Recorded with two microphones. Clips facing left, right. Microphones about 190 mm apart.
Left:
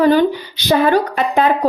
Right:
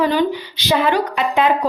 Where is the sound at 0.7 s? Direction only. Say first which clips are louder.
Left 3 dB; 40° left (ahead or behind).